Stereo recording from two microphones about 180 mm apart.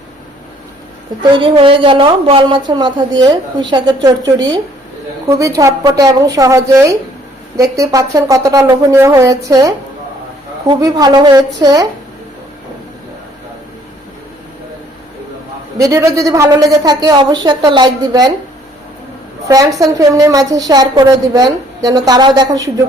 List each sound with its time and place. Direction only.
1.2 s a woman's voice: 30° right (ahead or behind)
10.8 s a woman's voice: 20° right (ahead or behind)
15.8 s a woman's voice: 15° right (ahead or behind)
19.5 s a woman's voice: 20° right (ahead or behind)